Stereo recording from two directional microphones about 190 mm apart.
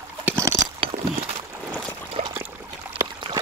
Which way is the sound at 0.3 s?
15° right (ahead or behind).